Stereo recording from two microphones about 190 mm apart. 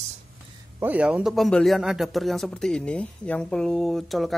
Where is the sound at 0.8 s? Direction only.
10° right (ahead or behind).